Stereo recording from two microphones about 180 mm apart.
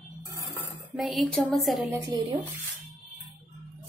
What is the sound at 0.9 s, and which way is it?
Speech, centre (ahead or behind).